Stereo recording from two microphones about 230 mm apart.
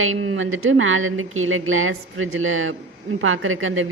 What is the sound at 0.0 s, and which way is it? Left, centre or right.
A man's voice, right.